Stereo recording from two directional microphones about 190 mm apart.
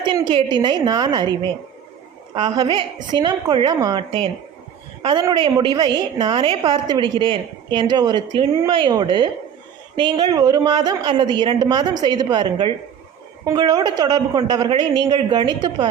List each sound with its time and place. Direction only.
0.0 s a woman's voice: 25° right (ahead or behind)